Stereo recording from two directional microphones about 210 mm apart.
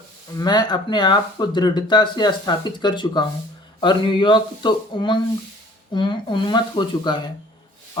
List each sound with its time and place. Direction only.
0.3 s speech: 20° left (ahead or behind)